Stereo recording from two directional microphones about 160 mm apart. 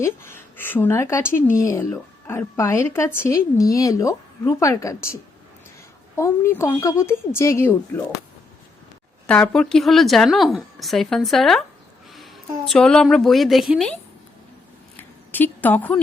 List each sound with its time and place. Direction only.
0.0 s a woman's voice: 15° left (ahead or behind)
6.1 s a woman's voice: 15° left (ahead or behind)
9.2 s a woman's voice: 5° left (ahead or behind)
14.9 s a sound: 10° left (ahead or behind)